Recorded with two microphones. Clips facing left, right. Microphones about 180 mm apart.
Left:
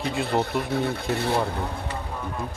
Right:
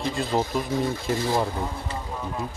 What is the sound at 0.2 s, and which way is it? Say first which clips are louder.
Speech: left 1 dB; 65° left (ahead or behind).